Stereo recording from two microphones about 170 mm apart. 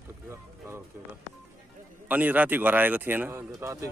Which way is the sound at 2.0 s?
10° right (ahead or behind).